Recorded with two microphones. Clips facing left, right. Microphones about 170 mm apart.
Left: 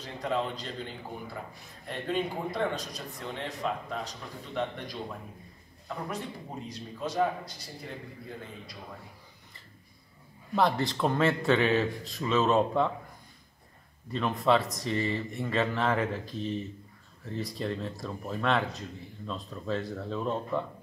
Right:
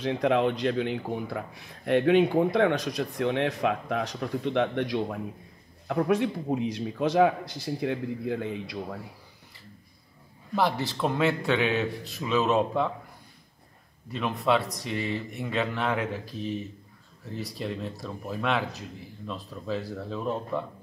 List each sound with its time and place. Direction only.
0.0 s speech: 70° right (ahead or behind)
10.5 s speech: 5° right (ahead or behind)
14.1 s speech: 5° right (ahead or behind)